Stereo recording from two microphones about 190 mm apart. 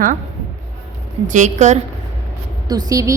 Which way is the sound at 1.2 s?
40° right (ahead or behind).